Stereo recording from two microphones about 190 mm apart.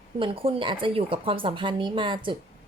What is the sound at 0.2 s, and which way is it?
Speech, 30° right (ahead or behind).